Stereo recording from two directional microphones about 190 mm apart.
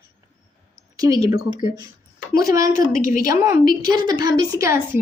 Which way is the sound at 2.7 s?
45° left (ahead or behind).